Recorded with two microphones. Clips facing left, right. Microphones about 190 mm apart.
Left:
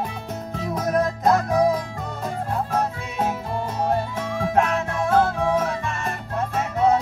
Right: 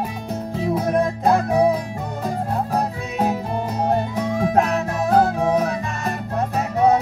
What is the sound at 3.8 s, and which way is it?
Music, 15° right (ahead or behind).